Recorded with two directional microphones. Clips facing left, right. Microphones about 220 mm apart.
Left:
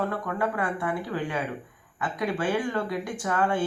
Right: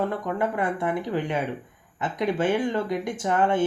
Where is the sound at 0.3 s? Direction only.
20° right (ahead or behind).